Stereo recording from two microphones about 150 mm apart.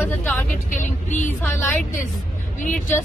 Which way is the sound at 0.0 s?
10° left (ahead or behind).